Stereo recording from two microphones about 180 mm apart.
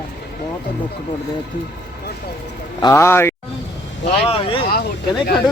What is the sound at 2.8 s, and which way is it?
Speech, 15° left (ahead or behind).